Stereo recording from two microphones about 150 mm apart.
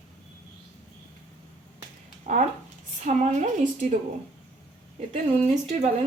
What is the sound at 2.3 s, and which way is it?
A woman's voice, 55° right (ahead or behind).